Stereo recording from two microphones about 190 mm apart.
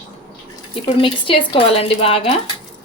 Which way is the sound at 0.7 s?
30° left (ahead or behind).